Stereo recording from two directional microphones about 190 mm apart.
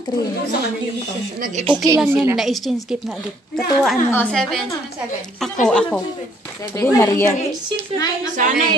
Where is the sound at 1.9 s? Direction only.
5° right (ahead or behind).